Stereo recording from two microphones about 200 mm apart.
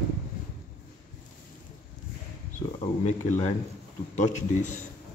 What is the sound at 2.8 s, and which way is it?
A man's voice, 40° left (ahead or behind).